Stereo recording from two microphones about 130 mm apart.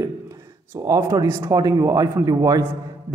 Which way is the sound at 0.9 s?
25° right (ahead or behind).